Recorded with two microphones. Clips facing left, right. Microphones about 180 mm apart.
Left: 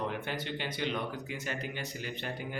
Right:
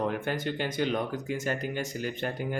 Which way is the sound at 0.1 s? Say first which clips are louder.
Right 6 dB; 45° right (ahead or behind).